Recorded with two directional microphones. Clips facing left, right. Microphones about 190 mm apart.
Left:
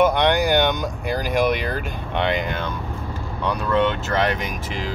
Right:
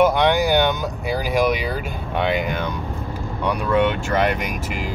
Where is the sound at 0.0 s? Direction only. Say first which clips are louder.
Right 1 dB; 5° right (ahead or behind).